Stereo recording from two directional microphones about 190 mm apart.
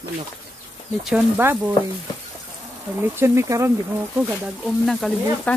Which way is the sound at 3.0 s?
10° right (ahead or behind).